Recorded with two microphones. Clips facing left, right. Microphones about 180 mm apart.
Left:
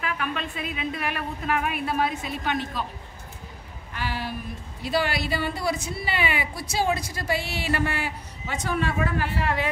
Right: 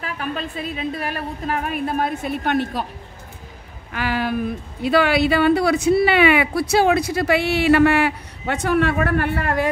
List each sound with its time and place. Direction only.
0.0 s a woman's voice: 40° right (ahead or behind); by 2.8 s 60° right (ahead or behind)
3.9 s speech: 90° right
4.8 s speech: 65° right (ahead or behind)